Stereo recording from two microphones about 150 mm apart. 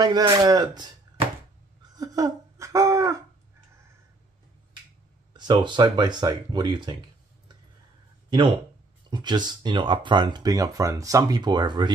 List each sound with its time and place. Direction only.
0.0 s speech: 25° right (ahead or behind)
2.0 s a sound: 20° right (ahead or behind)
5.3 s speech: 30° right (ahead or behind)
9.1 s speech: 30° right (ahead or behind)